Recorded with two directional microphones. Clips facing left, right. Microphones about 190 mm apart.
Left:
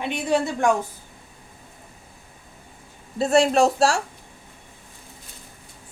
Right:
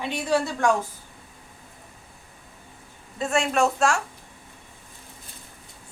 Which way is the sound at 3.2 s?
35° left (ahead or behind).